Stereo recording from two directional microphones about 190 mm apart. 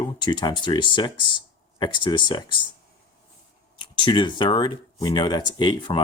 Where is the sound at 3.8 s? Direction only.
25° left (ahead or behind).